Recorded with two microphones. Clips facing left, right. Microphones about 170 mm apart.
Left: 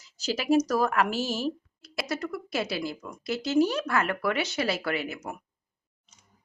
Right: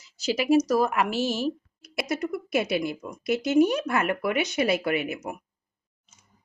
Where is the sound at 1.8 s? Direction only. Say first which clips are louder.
Right 3 dB; 20° right (ahead or behind).